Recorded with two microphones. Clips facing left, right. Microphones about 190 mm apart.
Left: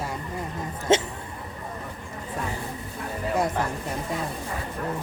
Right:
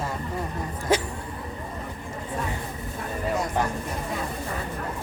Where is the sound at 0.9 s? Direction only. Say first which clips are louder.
Left 3 dB; 25° left (ahead or behind).